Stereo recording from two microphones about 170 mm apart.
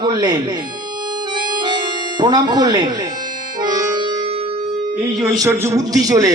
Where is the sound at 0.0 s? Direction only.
25° right (ahead or behind).